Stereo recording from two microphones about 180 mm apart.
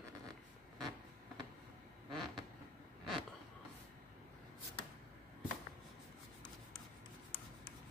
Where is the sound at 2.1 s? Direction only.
Centre (ahead or behind).